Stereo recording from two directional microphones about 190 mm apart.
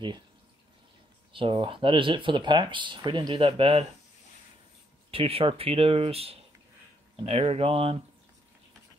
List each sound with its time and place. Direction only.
1.3 s speech: 25° right (ahead or behind)
5.1 s speech: 30° right (ahead or behind)